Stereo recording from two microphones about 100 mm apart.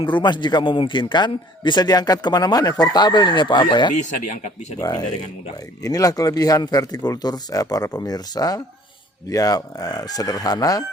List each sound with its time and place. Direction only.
0.0 s speech: 50° left (ahead or behind)